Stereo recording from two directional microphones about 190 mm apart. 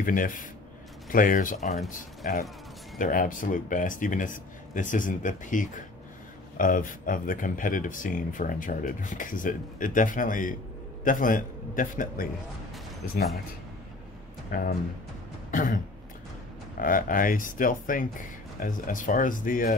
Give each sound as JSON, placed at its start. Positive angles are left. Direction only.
{"t": 0.0, "sound": "speech", "side_deg": 45}
{"t": 14.5, "sound": "speech", "side_deg": 45}